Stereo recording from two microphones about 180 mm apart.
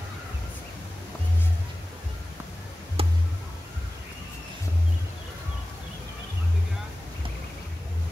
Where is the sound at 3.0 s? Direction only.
30° right (ahead or behind).